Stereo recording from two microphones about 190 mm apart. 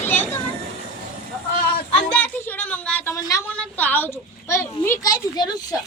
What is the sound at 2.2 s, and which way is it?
A woman's voice, 10° left (ahead or behind).